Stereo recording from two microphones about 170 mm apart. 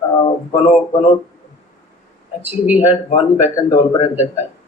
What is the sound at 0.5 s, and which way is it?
Speech, 35° left (ahead or behind).